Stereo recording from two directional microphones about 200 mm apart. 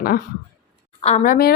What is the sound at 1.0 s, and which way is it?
Speech, 35° left (ahead or behind).